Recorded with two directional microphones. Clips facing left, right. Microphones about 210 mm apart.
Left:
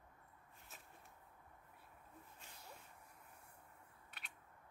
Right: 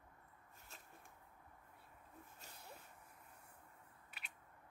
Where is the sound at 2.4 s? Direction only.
40° right (ahead or behind).